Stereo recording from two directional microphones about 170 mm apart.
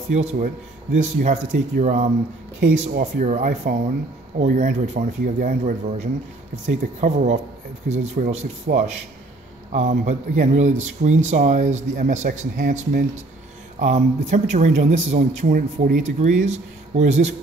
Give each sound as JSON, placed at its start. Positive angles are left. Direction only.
{"t": 0.1, "sound": "speech", "side_deg": -40}
{"t": 8.7, "sound": "a man's voice", "side_deg": -55}